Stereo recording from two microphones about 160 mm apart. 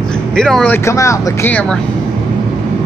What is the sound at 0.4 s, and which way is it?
Speech, 5° left (ahead or behind).